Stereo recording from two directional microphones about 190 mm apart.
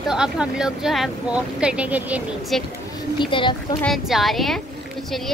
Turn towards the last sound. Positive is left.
turn(degrees=0)  # may be behind; listen again after turning